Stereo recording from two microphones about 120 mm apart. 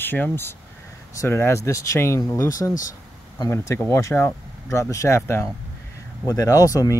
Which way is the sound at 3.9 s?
20° left (ahead or behind).